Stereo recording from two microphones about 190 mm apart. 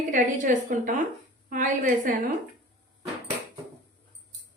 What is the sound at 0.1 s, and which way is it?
A woman's voice, 40° right (ahead or behind).